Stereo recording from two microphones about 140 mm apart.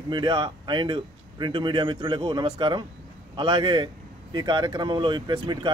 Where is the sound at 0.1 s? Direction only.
35° right (ahead or behind).